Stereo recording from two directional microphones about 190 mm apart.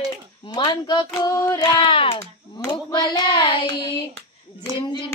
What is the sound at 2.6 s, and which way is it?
Hands, 15° left (ahead or behind).